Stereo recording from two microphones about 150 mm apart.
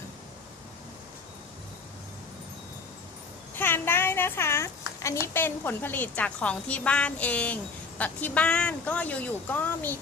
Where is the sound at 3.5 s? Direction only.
15° left (ahead or behind).